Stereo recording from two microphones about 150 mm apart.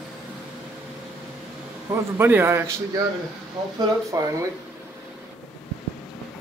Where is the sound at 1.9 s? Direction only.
15° right (ahead or behind).